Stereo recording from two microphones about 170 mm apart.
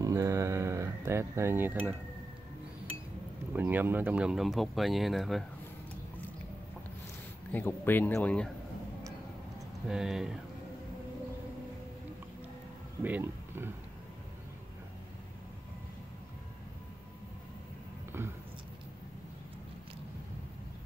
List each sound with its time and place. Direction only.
0.0 s cutlery: 20° right (ahead or behind)
3.5 s speech: 10° right (ahead or behind)
7.5 s speech: 10° left (ahead or behind)
9.8 s speech: 5° right (ahead or behind)
13.0 s speech: 10° right (ahead or behind)